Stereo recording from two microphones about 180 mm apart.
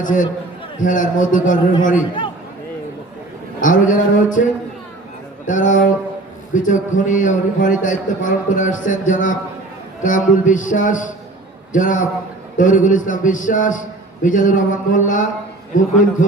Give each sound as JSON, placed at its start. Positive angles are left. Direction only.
{"t": 0.0, "sound": "a man's voice", "side_deg": 45}
{"t": 3.6, "sound": "a man's voice", "side_deg": 45}
{"t": 5.5, "sound": "a man's voice", "side_deg": 45}